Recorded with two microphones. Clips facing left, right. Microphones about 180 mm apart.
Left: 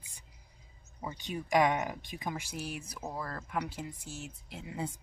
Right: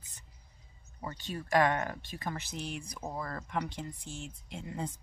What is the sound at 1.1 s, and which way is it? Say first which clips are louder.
Speech: even; 15° left (ahead or behind).